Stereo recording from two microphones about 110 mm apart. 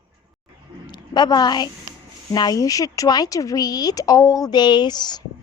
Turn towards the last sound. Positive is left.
turn(degrees=40)  # may be behind; listen again after turning